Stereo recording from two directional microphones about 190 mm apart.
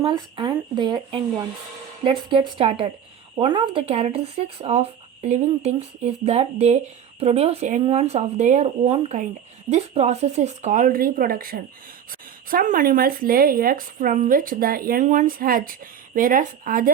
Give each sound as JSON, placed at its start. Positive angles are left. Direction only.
{"t": 0.0, "sound": "speech", "side_deg": -25}